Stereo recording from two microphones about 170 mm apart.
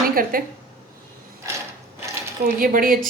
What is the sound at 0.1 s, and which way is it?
Speech, 55° right (ahead or behind).